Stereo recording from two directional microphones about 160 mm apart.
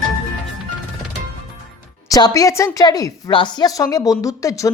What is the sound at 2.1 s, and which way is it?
A woman's voice, 25° left (ahead or behind).